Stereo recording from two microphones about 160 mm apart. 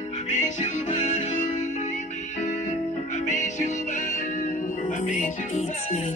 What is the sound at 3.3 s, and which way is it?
Music, 50° left (ahead or behind).